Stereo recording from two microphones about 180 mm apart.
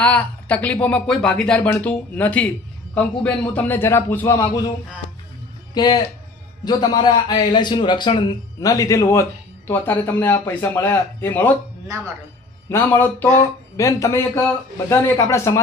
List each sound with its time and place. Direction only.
0.0 s speech: 10° left (ahead or behind)
5.7 s a man's voice: 25° left (ahead or behind)
12.6 s speech: 15° left (ahead or behind)